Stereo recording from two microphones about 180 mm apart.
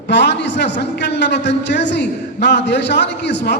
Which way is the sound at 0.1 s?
70° left (ahead or behind).